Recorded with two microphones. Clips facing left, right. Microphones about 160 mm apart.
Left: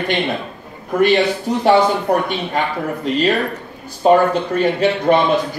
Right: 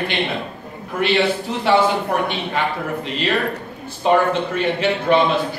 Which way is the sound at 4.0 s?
40° left (ahead or behind).